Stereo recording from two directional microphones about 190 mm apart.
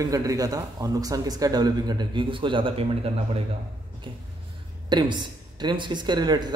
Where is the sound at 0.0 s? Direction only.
20° right (ahead or behind).